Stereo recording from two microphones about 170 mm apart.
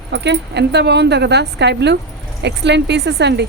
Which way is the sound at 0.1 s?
90° right.